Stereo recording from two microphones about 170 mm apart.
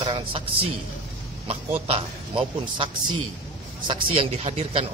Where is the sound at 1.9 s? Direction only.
35° right (ahead or behind).